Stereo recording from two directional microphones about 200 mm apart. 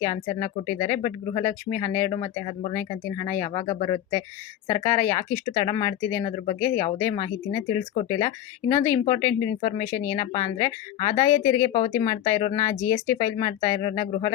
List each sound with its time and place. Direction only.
0.0 s speech: 15° left (ahead or behind)
3.6 s speech: 30° left (ahead or behind)
4.8 s speech: 15° left (ahead or behind)